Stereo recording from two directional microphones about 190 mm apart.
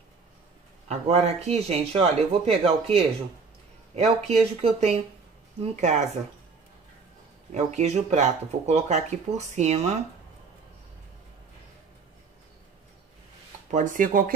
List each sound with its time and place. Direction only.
0.8 s speech: 35° right (ahead or behind)
7.5 s speech: 35° right (ahead or behind)
13.7 s speech: 40° right (ahead or behind)